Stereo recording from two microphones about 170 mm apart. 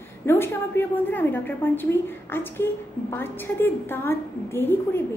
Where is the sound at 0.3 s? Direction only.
15° left (ahead or behind).